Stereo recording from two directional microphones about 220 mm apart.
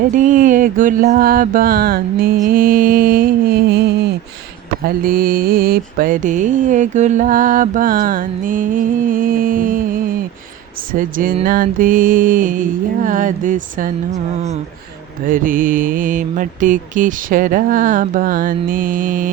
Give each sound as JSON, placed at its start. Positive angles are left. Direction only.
{"t": 0.1, "sound": "mantra", "side_deg": -35}